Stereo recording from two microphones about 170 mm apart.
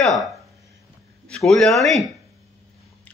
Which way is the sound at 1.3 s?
Centre (ahead or behind).